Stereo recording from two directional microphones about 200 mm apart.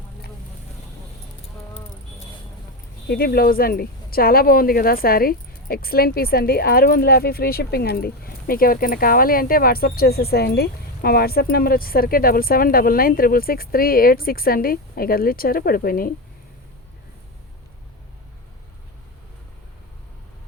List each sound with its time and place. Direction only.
3.1 s speech: 50° left (ahead or behind)